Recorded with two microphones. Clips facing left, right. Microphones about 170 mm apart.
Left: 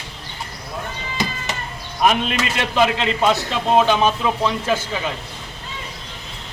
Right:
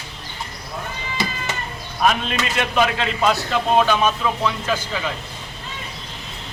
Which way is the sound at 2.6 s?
25° left (ahead or behind).